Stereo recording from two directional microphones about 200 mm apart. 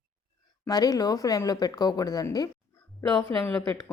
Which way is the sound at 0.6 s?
20° left (ahead or behind).